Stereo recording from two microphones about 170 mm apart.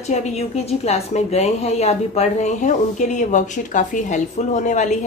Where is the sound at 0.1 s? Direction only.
40° left (ahead or behind).